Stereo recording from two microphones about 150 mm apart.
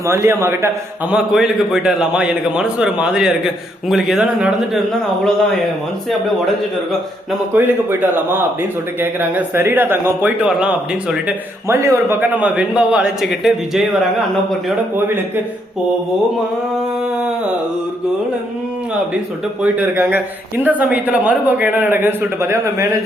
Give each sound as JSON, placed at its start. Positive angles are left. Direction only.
{"t": 0.0, "sound": "speech", "side_deg": -20}
{"t": 1.1, "sound": "a man's voice", "side_deg": -5}
{"t": 7.5, "sound": "speech", "side_deg": -15}
{"t": 11.7, "sound": "speech", "side_deg": -20}
{"t": 14.9, "sound": "speech", "side_deg": -15}
{"t": 19.6, "sound": "speech", "side_deg": -10}